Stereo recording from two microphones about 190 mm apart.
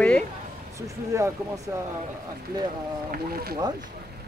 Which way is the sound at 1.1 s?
15° right (ahead or behind).